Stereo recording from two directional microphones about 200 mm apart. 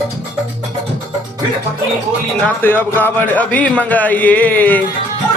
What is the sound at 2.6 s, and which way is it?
Speech, 10° left (ahead or behind).